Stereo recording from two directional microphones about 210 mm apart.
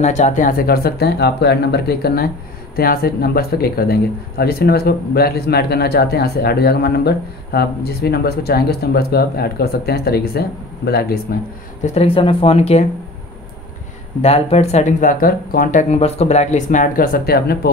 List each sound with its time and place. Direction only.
0.0 s speech: 35° left (ahead or behind)
11.8 s speech: 30° left (ahead or behind)
14.2 s speech: 30° left (ahead or behind); by 17.6 s 45° left (ahead or behind)